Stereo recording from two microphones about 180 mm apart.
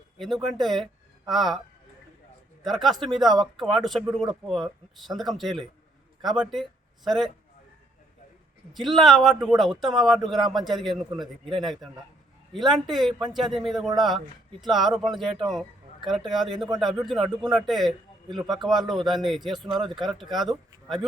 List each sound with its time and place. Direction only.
0.2 s speech: centre (ahead or behind)
2.8 s speech: centre (ahead or behind)
8.7 s speech: centre (ahead or behind)